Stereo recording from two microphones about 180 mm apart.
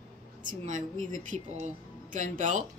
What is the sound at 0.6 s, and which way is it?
Speech, 45° right (ahead or behind).